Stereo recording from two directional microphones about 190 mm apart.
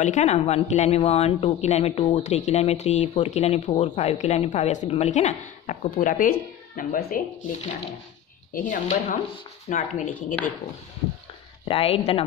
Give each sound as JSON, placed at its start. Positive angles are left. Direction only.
{"t": 0.0, "sound": "a woman's voice", "side_deg": 40}
{"t": 11.6, "sound": "a woman's voice", "side_deg": 30}